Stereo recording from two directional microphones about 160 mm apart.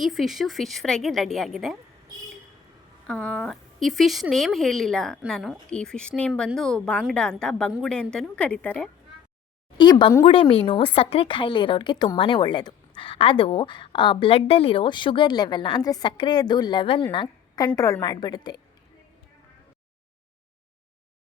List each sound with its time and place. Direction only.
0.0 s speech: centre (ahead or behind)
3.1 s speech: 5° left (ahead or behind)
9.7 s a woman's voice: 30° left (ahead or behind)